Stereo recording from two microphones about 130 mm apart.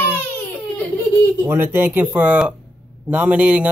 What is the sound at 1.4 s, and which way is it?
A man's voice, 15° right (ahead or behind).